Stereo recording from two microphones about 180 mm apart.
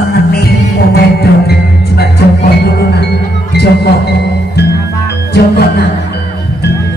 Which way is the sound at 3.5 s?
65° left (ahead or behind).